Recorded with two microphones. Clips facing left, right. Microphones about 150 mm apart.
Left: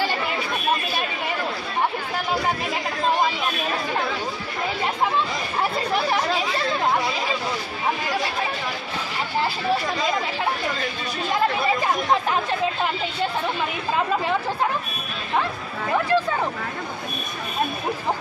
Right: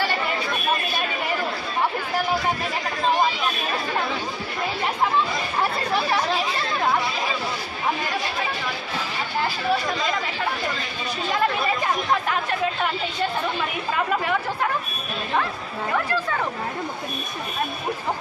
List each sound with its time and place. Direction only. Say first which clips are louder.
15.9 s speech: left 4 dB; 20° left (ahead or behind)